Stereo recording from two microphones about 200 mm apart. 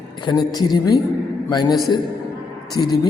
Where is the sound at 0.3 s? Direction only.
20° left (ahead or behind).